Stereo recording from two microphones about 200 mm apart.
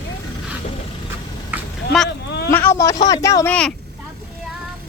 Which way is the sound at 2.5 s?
10° left (ahead or behind).